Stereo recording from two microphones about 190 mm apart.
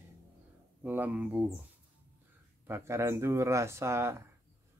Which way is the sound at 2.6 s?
15° right (ahead or behind).